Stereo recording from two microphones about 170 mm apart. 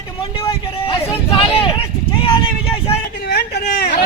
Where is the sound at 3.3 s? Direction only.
70° left (ahead or behind).